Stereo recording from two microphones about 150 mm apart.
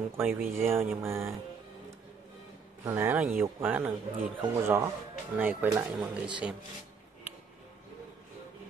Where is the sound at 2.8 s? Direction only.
20° right (ahead or behind).